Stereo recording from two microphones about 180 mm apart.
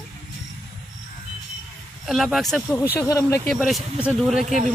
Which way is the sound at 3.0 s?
15° left (ahead or behind).